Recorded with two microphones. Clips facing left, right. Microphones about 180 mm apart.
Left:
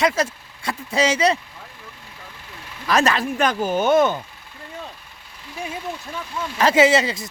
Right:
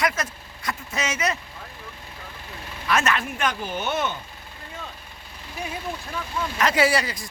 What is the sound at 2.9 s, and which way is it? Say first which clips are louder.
Speech: left 4 dB; 35° left (ahead or behind).